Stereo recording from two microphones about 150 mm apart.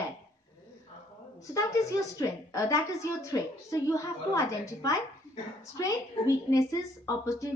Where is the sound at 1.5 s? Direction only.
20° left (ahead or behind).